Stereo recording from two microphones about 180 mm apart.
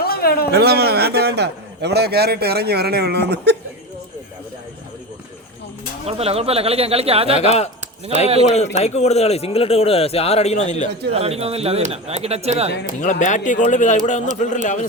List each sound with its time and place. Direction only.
0.0 s a sound: 60° left (ahead or behind)
0.5 s a man's voice: 60° right (ahead or behind)
6.1 s speech: 35° right (ahead or behind)
8.7 s speech: 35° left (ahead or behind)
11.1 s speech: 35° right (ahead or behind)
13.0 s speech: 45° left (ahead or behind)